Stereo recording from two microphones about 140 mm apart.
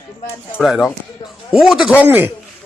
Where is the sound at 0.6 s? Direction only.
Centre (ahead or behind).